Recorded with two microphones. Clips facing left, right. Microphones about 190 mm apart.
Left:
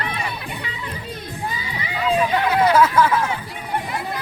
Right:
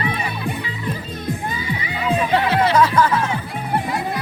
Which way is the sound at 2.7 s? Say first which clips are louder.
Even; 5° left (ahead or behind).